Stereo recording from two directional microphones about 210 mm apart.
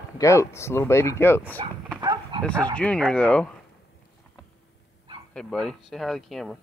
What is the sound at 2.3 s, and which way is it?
Speech, 25° right (ahead or behind).